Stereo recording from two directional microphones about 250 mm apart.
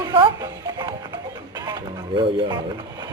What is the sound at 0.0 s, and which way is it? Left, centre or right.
Music, centre.